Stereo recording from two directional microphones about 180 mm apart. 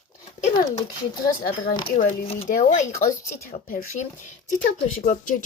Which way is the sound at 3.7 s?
45° left (ahead or behind).